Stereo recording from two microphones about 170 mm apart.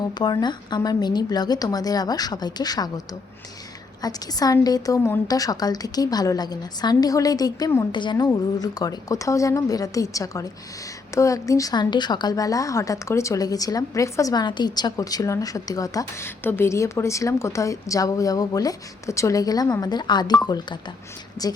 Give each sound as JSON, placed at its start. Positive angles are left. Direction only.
{"t": 0.1, "sound": "a woman's voice", "side_deg": 25}
{"t": 4.0, "sound": "a woman's voice", "side_deg": 20}
{"t": 21.4, "sound": "a woman's voice", "side_deg": 20}